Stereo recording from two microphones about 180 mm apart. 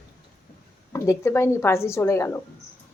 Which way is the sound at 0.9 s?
15° left (ahead or behind).